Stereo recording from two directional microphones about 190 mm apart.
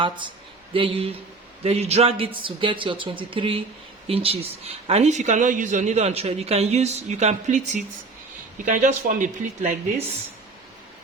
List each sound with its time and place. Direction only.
0.7 s a man's voice: 30° right (ahead or behind); by 9.7 s 45° right (ahead or behind)